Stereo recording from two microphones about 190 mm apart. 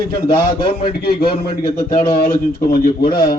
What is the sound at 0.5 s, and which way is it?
Speech, 25° left (ahead or behind).